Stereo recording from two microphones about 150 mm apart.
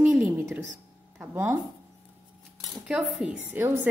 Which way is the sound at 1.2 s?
15° right (ahead or behind).